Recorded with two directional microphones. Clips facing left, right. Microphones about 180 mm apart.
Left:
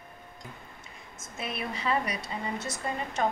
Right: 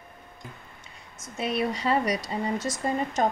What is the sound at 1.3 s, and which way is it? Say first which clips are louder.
Speech: right 8 dB; 35° right (ahead or behind).